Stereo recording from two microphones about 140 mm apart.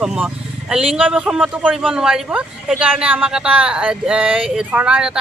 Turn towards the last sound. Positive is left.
turn(degrees=-10)  # may be behind; listen again after turning